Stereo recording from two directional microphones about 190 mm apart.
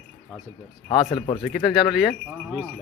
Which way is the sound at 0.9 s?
25° left (ahead or behind).